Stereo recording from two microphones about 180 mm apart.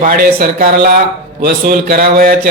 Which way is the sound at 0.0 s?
55° right (ahead or behind).